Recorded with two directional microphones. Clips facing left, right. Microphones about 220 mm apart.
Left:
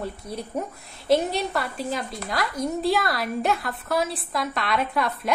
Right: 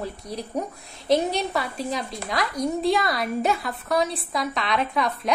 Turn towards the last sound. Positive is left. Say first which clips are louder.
# even
turn(degrees=0)  # may be behind; listen again after turning